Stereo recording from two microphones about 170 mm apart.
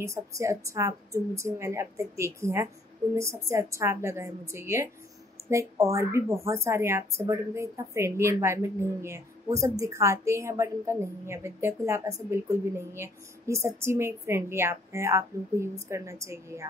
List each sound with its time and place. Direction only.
0.0 s a woman's voice: 15° right (ahead or behind)